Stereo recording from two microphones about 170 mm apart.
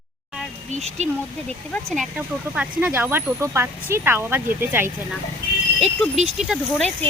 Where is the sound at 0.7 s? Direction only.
40° right (ahead or behind).